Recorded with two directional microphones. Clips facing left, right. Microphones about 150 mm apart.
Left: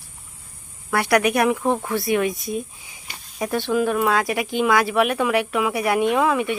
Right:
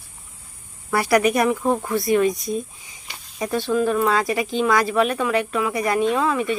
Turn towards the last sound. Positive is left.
turn(degrees=10)  # may be behind; listen again after turning